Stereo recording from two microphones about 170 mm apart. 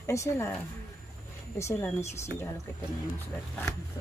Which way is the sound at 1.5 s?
15° left (ahead or behind).